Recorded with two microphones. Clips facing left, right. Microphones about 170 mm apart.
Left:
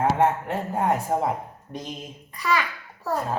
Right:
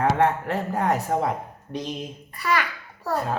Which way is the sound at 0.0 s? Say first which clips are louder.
Even; 75° right (ahead or behind).